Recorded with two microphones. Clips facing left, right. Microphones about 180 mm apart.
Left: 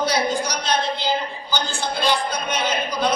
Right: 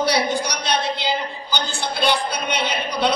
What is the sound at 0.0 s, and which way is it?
A woman's voice, 65° right (ahead or behind).